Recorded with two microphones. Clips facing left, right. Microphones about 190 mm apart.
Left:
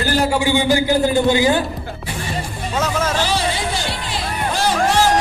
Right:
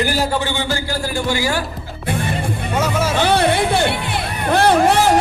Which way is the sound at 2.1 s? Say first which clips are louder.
Right 6 dB; 55° right (ahead or behind).